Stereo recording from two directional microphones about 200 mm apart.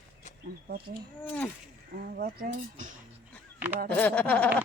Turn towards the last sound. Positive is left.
turn(degrees=5)  # may be behind; listen again after turning